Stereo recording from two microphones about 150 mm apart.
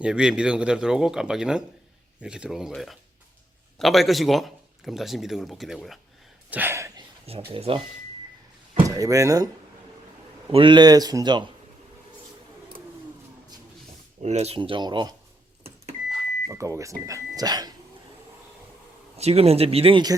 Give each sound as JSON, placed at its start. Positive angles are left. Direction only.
{"t": 0.0, "sound": "a man's voice", "side_deg": -5}
{"t": 6.5, "sound": "speech", "side_deg": -15}
{"t": 7.5, "sound": "speech", "side_deg": -35}
{"t": 9.0, "sound": "speech", "side_deg": -20}
{"t": 10.5, "sound": "speech", "side_deg": -35}
{"t": 14.2, "sound": "speech", "side_deg": -45}
{"t": 16.5, "sound": "speech", "side_deg": -20}
{"t": 19.1, "sound": "speech", "side_deg": -40}